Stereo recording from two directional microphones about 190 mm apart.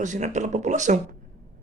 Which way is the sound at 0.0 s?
40° right (ahead or behind).